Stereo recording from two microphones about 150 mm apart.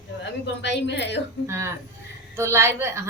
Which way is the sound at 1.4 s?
20° right (ahead or behind).